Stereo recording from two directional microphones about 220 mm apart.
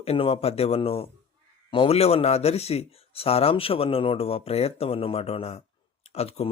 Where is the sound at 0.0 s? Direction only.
25° left (ahead or behind).